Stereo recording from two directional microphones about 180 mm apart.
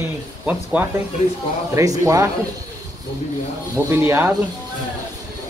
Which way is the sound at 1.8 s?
20° right (ahead or behind).